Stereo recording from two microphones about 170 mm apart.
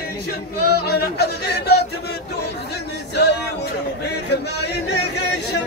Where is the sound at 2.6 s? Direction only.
75° left (ahead or behind).